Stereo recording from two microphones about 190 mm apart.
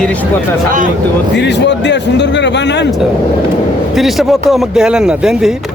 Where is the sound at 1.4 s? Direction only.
65° left (ahead or behind).